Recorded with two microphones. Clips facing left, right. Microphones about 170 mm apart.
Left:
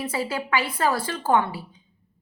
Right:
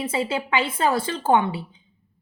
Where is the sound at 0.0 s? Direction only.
25° right (ahead or behind).